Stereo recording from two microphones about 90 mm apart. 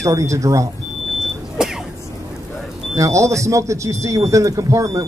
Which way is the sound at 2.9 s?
35° right (ahead or behind).